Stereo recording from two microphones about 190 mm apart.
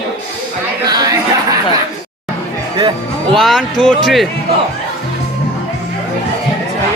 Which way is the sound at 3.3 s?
Centre (ahead or behind).